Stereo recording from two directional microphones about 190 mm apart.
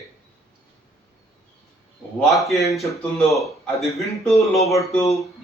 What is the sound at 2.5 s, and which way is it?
A man's voice, centre (ahead or behind).